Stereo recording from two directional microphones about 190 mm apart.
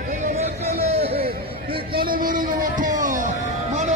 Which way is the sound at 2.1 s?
45° right (ahead or behind).